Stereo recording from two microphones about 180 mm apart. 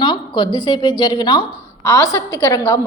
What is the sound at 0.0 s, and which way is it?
A woman's voice, 25° left (ahead or behind).